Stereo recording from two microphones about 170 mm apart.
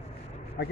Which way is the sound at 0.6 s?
70° left (ahead or behind).